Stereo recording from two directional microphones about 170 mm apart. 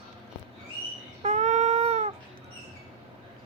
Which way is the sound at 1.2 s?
45° right (ahead or behind).